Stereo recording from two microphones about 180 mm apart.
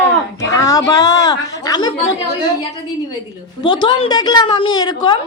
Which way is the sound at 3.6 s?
25° left (ahead or behind).